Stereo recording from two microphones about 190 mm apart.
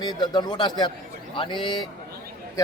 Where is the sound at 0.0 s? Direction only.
25° left (ahead or behind).